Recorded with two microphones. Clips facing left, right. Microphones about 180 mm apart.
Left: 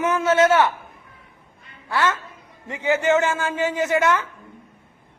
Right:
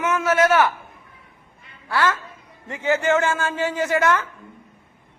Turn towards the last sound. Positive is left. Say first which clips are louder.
# even
turn(degrees=20)  # may be behind; listen again after turning